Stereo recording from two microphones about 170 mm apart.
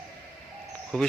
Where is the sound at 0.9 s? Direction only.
5° left (ahead or behind).